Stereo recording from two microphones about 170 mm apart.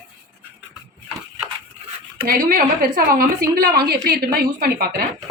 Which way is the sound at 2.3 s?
55° right (ahead or behind).